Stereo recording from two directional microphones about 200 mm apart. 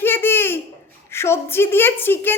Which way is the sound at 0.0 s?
10° left (ahead or behind).